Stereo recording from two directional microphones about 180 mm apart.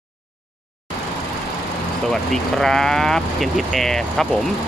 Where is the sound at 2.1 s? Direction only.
Centre (ahead or behind).